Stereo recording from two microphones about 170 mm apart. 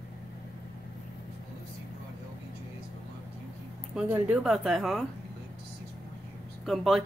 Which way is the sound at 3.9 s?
5° right (ahead or behind).